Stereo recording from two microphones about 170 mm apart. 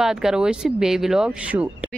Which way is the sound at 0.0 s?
5° right (ahead or behind).